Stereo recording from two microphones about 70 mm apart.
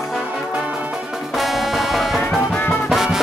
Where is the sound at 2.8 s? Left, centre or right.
Centre.